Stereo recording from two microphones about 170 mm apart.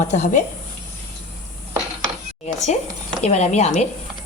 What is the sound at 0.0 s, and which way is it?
Speech, 45° left (ahead or behind).